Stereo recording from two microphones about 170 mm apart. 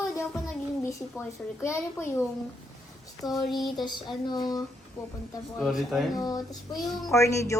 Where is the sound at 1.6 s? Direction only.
15° left (ahead or behind).